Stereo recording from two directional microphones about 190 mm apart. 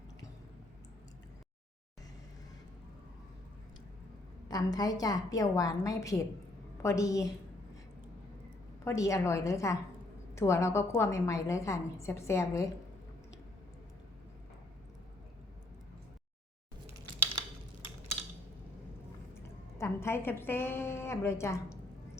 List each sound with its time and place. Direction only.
4.4 s a woman's voice: 20° left (ahead or behind)
8.8 s a woman's voice: 15° left (ahead or behind)
19.8 s a woman's voice: 15° left (ahead or behind)